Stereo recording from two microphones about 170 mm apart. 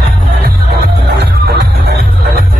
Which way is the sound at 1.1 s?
70° right (ahead or behind).